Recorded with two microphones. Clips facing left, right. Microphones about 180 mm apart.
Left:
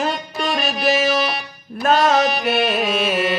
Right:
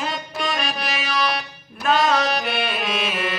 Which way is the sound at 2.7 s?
40° left (ahead or behind).